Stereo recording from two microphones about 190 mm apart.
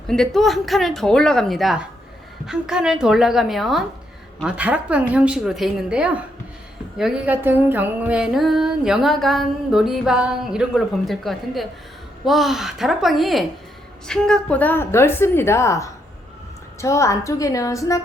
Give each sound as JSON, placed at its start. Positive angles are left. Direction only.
{"t": 0.3, "sound": "music", "side_deg": 0}
{"t": 14.1, "sound": "a woman's voice", "side_deg": 5}